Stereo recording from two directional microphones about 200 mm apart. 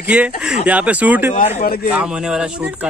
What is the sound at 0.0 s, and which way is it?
Speech, 10° right (ahead or behind).